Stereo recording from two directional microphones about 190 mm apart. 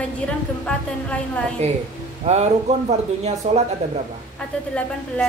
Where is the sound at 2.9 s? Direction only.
35° right (ahead or behind).